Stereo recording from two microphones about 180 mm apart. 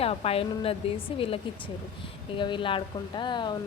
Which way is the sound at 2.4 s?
25° left (ahead or behind).